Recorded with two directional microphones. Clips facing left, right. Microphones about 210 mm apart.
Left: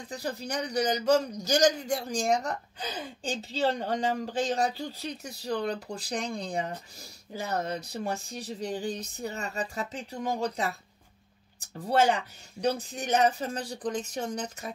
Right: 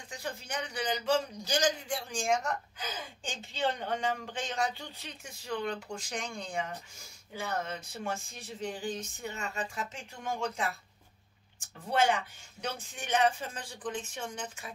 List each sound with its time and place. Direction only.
0.1 s speech: 35° left (ahead or behind)